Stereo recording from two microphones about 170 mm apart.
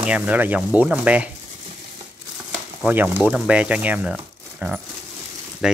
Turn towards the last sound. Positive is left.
turn(degrees=-5)  # may be behind; listen again after turning